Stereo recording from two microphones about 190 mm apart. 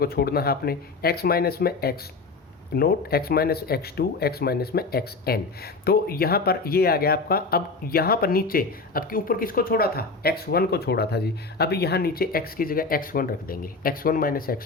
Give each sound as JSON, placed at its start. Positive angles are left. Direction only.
{"t": 0.0, "sound": "speech", "side_deg": 55}